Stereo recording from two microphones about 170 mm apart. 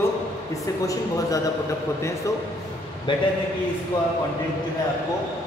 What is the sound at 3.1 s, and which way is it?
Speech, 30° left (ahead or behind).